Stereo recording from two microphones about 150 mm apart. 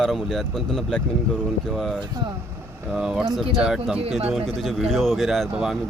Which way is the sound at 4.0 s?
45° right (ahead or behind).